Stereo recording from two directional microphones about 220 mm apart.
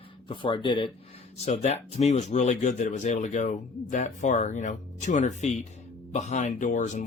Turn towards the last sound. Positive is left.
turn(degrees=35)  # may be behind; listen again after turning